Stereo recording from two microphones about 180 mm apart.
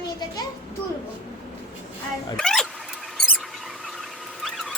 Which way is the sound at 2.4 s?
Centre (ahead or behind).